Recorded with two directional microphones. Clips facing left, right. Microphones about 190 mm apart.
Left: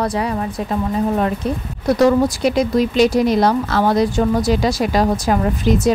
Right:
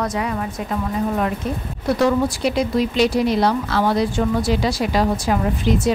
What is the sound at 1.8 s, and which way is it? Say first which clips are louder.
Speech: left 4 dB; 40° left (ahead or behind).